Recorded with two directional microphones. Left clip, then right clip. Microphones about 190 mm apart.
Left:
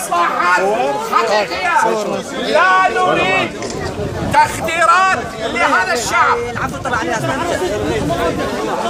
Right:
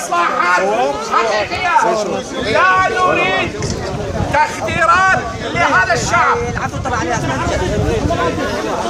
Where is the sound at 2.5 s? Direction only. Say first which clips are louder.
Left 1 dB; 45° left (ahead or behind).